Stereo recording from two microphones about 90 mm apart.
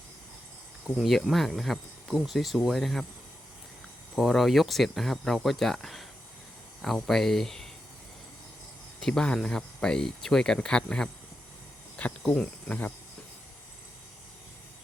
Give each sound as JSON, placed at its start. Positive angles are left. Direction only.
{"t": 0.9, "sound": "speech", "side_deg": 0}
{"t": 4.1, "sound": "speech", "side_deg": 0}
{"t": 9.0, "sound": "speech", "side_deg": 5}